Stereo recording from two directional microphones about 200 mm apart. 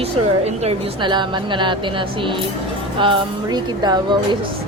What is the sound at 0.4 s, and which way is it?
A woman's voice, 30° right (ahead or behind).